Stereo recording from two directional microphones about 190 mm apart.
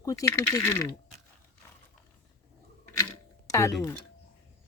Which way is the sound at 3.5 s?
15° left (ahead or behind).